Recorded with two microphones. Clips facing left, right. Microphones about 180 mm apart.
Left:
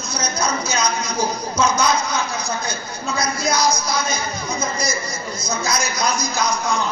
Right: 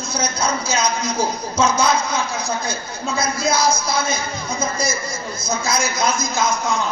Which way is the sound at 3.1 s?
30° right (ahead or behind).